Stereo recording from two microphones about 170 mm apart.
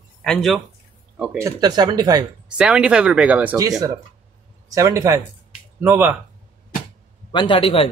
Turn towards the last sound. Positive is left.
turn(degrees=35)  # may be behind; listen again after turning